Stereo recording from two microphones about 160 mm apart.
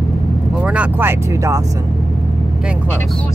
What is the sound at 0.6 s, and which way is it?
Music, 10° right (ahead or behind).